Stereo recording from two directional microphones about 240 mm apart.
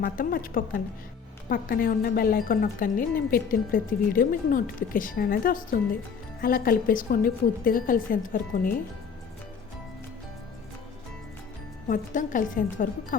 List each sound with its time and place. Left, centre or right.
0.0 s speech: left
11.9 s speech: left